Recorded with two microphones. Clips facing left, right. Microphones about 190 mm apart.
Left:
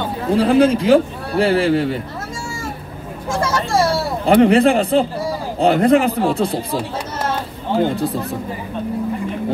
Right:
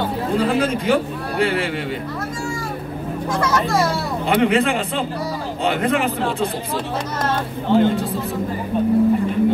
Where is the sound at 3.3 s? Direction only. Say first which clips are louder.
Left 1 dB; 25° left (ahead or behind).